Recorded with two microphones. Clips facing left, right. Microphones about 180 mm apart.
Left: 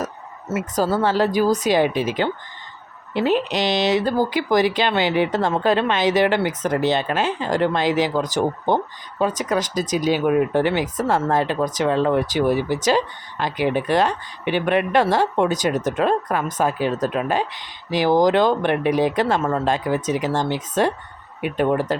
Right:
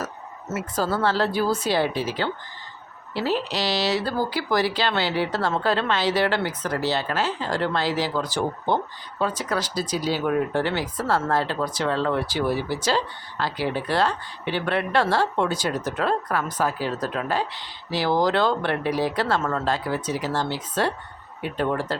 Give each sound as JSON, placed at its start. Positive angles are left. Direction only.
{"t": 0.8, "sound": "speech", "side_deg": 15}